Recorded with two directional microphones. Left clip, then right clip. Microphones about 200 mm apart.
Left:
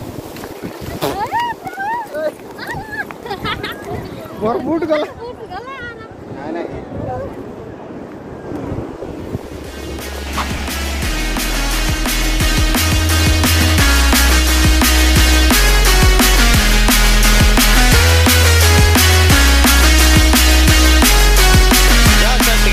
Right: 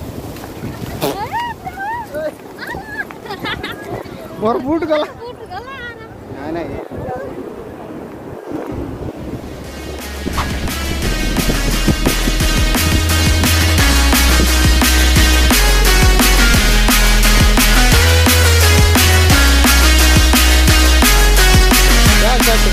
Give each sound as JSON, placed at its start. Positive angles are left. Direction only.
{"t": 1.3, "sound": "boat", "side_deg": 50}
{"t": 4.4, "sound": "speech", "side_deg": -40}
{"t": 4.8, "sound": "speech", "side_deg": -20}
{"t": 10.3, "sound": "music", "side_deg": 0}